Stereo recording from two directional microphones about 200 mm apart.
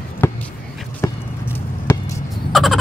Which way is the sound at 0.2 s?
10° left (ahead or behind).